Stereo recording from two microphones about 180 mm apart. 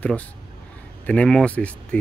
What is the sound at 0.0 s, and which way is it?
Speech, 5° left (ahead or behind).